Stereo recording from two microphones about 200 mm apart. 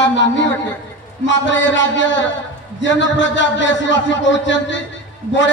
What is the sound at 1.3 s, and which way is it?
A man's voice, 65° left (ahead or behind).